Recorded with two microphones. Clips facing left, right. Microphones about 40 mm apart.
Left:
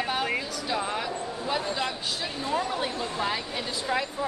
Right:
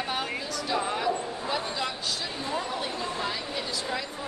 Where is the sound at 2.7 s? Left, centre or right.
Centre.